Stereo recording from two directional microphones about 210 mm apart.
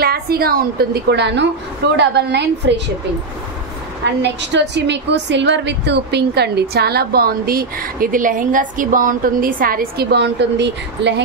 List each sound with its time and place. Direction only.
0.0 s a woman's voice: 45° right (ahead or behind)
4.0 s a woman's voice: 55° right (ahead or behind)